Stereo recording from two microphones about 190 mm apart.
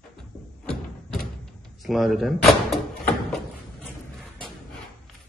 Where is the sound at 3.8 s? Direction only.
5° left (ahead or behind).